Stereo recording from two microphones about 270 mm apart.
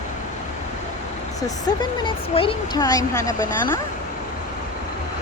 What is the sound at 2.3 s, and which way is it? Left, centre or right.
Speech, centre.